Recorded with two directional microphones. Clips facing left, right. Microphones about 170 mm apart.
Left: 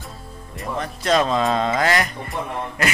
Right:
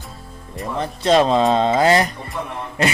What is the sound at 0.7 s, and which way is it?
Speech, 30° right (ahead or behind).